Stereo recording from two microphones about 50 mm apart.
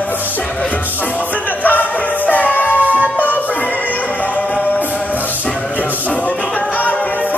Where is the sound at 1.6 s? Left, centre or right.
Left.